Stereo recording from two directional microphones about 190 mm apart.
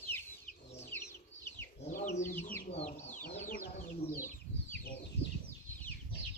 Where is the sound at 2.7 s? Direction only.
35° left (ahead or behind).